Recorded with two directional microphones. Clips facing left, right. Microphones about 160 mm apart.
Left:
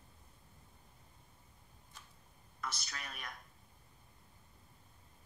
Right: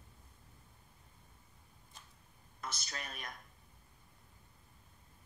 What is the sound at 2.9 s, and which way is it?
Speech, 35° right (ahead or behind).